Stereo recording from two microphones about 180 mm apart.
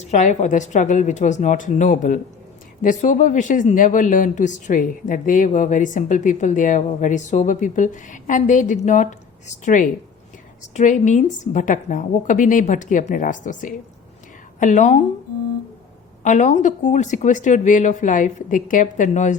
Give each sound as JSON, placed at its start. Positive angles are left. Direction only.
{"t": 0.1, "sound": "speech", "side_deg": 40}
{"t": 16.2, "sound": "speech", "side_deg": 40}